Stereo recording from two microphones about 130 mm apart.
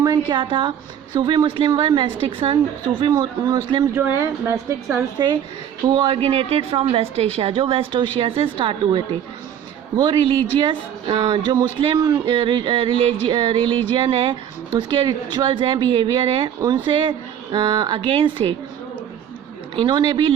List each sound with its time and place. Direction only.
0.0 s speech: 30° right (ahead or behind)
3.9 s a woman's voice: 20° right (ahead or behind)
5.1 s speech: 35° right (ahead or behind)
6.2 s a woman's voice: 50° right (ahead or behind)
10.0 s speech: 40° right (ahead or behind)
19.7 s speech: 35° right (ahead or behind)